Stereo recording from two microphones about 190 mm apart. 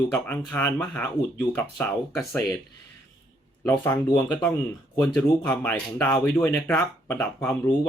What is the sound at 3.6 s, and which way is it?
Speech, 10° left (ahead or behind).